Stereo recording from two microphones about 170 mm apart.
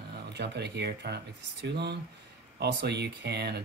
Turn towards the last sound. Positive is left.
turn(degrees=-75)  # may be behind; listen again after turning